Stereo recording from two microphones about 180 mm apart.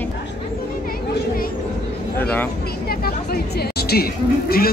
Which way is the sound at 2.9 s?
60° left (ahead or behind).